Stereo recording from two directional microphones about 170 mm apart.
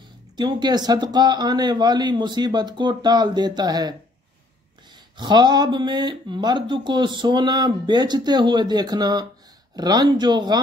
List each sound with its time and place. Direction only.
0.4 s speech: 25° right (ahead or behind)
5.1 s speech: 25° right (ahead or behind)